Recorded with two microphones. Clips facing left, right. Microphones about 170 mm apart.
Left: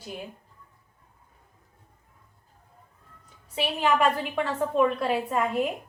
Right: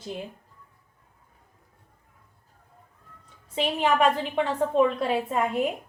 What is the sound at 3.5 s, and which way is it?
A woman's voice, 25° right (ahead or behind).